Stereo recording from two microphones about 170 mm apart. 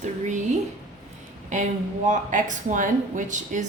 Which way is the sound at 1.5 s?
45° right (ahead or behind).